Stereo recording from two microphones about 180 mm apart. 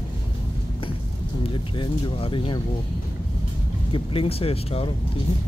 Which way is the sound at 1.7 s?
25° left (ahead or behind).